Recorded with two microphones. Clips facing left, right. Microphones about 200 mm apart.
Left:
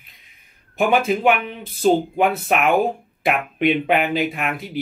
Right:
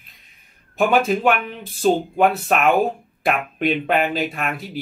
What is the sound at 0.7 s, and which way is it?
Speech, 15° left (ahead or behind).